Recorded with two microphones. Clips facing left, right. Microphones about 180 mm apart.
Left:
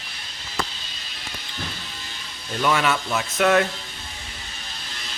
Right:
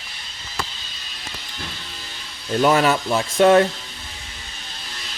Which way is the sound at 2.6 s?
40° right (ahead or behind).